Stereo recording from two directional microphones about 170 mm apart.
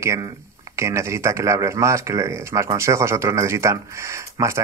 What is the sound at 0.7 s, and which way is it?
Speech, 15° right (ahead or behind).